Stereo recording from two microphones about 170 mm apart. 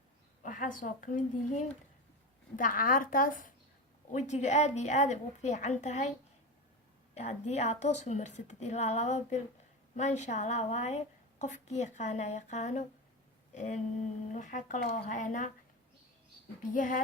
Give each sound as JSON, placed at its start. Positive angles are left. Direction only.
{"t": 0.4, "sound": "a woman's voice", "side_deg": 50}
{"t": 16.7, "sound": "a woman's voice", "side_deg": 50}